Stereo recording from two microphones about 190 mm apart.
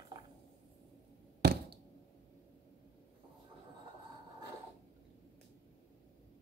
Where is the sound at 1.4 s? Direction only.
55° right (ahead or behind).